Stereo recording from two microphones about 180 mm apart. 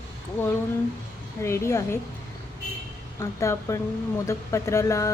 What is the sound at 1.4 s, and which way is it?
Speech, 15° left (ahead or behind).